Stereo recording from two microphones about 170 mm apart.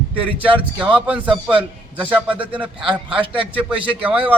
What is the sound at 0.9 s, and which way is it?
A man's voice, 10° right (ahead or behind).